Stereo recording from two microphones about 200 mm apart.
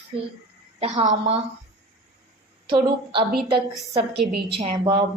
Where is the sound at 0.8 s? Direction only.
35° right (ahead or behind).